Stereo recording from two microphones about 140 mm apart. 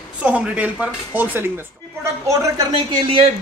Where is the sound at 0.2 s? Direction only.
10° right (ahead or behind).